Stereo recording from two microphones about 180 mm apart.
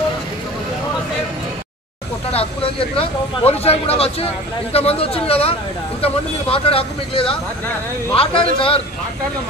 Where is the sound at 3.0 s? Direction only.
35° left (ahead or behind).